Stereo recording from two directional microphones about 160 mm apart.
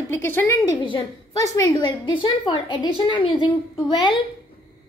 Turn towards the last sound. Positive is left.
turn(degrees=30)  # may be behind; listen again after turning